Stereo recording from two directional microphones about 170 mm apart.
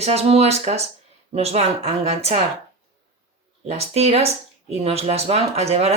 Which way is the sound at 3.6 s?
40° right (ahead or behind).